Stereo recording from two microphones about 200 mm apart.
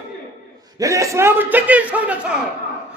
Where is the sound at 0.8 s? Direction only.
15° right (ahead or behind).